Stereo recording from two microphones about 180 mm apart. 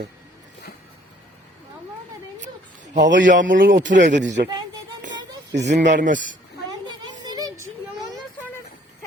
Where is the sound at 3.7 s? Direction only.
45° right (ahead or behind).